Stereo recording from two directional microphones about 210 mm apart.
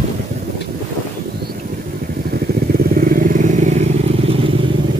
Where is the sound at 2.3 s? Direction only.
45° right (ahead or behind); by 4.6 s 25° right (ahead or behind).